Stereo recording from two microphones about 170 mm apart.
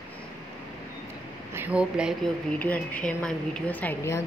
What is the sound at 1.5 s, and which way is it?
Speech, 10° right (ahead or behind).